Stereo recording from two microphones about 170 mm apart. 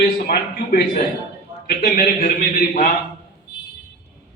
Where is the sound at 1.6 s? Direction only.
55° left (ahead or behind).